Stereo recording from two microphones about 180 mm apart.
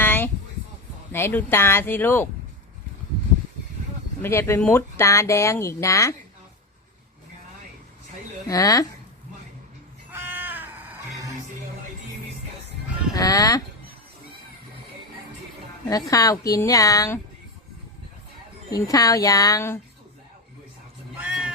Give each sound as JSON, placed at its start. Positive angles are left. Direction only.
{"t": 0.0, "sound": "a sound", "side_deg": 10}
{"t": 1.1, "sound": "speech", "side_deg": 10}
{"t": 4.2, "sound": "speech", "side_deg": 15}
{"t": 8.4, "sound": "a woman's voice", "side_deg": 20}
{"t": 10.1, "sound": "music", "side_deg": -10}
{"t": 13.1, "sound": "a woman's voice", "side_deg": 20}
{"t": 15.9, "sound": "a woman's voice", "side_deg": 20}
{"t": 18.7, "sound": "a woman's voice", "side_deg": 20}
{"t": 21.2, "sound": "cat", "side_deg": -5}